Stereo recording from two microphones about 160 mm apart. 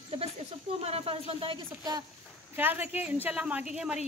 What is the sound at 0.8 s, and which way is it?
Speech, 40° right (ahead or behind).